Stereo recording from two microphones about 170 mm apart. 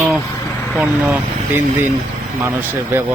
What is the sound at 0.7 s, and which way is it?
A man's voice, 5° right (ahead or behind).